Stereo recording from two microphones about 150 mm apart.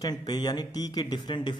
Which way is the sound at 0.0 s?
25° left (ahead or behind).